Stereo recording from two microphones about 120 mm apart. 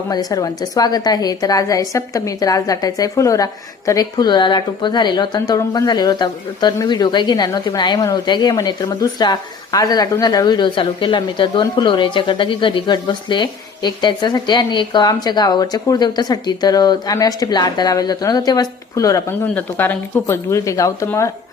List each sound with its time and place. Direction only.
0.1 s speech: 30° left (ahead or behind)
19.5 s speech: 15° left (ahead or behind)